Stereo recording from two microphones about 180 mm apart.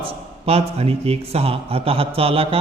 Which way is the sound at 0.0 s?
35° right (ahead or behind).